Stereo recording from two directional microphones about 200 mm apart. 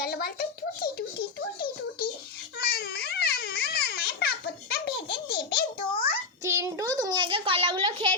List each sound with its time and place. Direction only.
0.0 s a child's voice: 50° left (ahead or behind)
0.8 s music: 50° left (ahead or behind)
2.6 s babbling: 50° left (ahead or behind)
6.4 s a sound: 15° right (ahead or behind)